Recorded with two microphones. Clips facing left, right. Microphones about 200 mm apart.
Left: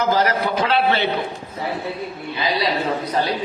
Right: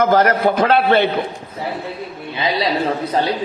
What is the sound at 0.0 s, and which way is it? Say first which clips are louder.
A man's voice: right 5 dB; 55° right (ahead or behind).